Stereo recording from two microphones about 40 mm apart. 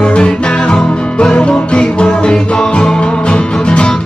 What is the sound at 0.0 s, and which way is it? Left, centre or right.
Music, left.